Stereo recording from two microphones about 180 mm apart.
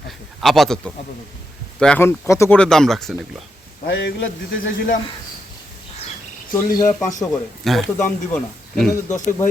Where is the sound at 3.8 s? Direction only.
80° left.